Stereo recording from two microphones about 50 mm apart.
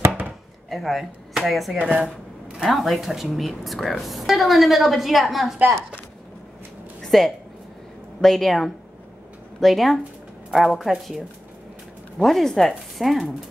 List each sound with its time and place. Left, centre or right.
0.7 s a woman's voice: centre
1.8 s speech: centre
2.6 s a woman's voice: centre
7.1 s a woman's voice: centre